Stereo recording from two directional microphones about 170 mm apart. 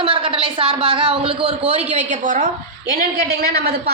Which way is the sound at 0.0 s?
30° right (ahead or behind).